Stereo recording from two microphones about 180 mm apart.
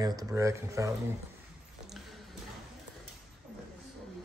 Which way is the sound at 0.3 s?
15° right (ahead or behind).